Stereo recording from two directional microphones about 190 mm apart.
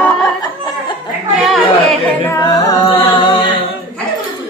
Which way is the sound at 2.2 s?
20° left (ahead or behind).